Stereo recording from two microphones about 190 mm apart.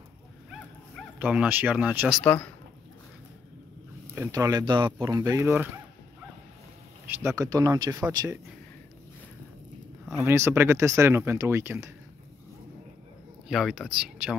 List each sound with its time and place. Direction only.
0.5 s bow-wow: 5° right (ahead or behind)
2.2 s speech: 10° left (ahead or behind)
4.1 s speech: 15° right (ahead or behind)
7.2 s speech: 15° right (ahead or behind)
10.2 s speech: 15° right (ahead or behind)
13.5 s speech: centre (ahead or behind)